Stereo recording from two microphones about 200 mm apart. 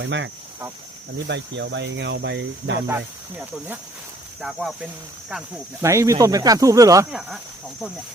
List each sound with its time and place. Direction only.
0.0 s speech: 65° right (ahead or behind)
1.3 s speech: 60° right (ahead or behind)
2.8 s speech: 10° right (ahead or behind)
5.8 s speech: 15° right (ahead or behind)
7.1 s speech: 5° right (ahead or behind)